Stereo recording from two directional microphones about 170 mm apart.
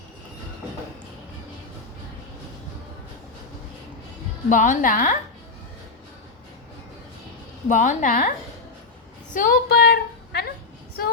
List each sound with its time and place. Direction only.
4.4 s a woman's voice: 45° left (ahead or behind)
7.7 s a woman's voice: 50° left (ahead or behind)
9.3 s a woman's voice: 55° left (ahead or behind)